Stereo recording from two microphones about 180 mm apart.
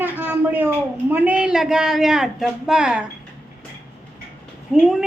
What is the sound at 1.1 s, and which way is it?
A woman's voice, 5° right (ahead or behind).